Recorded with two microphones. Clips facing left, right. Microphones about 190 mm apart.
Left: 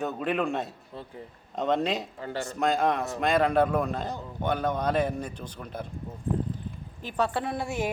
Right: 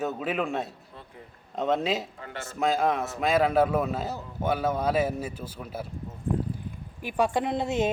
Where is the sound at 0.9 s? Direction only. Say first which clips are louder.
Left 11 dB; 30° left (ahead or behind).